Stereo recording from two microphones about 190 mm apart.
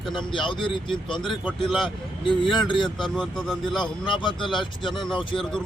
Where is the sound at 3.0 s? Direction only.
Centre (ahead or behind).